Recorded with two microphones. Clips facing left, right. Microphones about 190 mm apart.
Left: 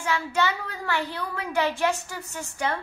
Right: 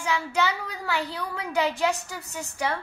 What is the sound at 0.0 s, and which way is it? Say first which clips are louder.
A child's voice: even; 10° right (ahead or behind).